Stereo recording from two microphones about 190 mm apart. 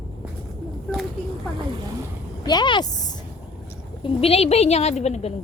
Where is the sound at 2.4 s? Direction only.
25° left (ahead or behind).